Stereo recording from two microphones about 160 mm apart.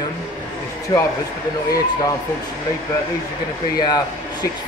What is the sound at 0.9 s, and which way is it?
Speech, 30° left (ahead or behind).